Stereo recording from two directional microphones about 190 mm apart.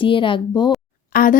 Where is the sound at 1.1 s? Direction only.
45° left (ahead or behind).